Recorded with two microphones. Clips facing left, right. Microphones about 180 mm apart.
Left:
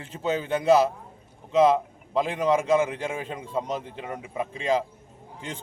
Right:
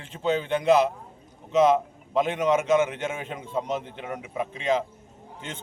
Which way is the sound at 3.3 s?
Centre (ahead or behind).